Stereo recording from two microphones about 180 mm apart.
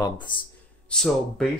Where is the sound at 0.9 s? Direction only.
Centre (ahead or behind).